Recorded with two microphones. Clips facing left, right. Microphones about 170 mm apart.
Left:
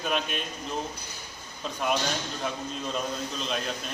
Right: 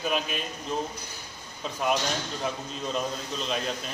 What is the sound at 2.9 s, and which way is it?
Speech, centre (ahead or behind).